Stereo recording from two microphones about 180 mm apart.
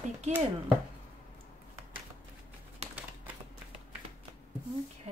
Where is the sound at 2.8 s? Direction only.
35° right (ahead or behind).